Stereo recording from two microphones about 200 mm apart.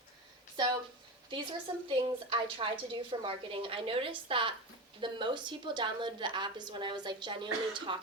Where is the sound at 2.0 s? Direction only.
25° right (ahead or behind).